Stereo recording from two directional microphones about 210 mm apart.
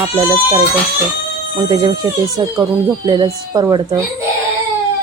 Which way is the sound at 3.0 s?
20° right (ahead or behind).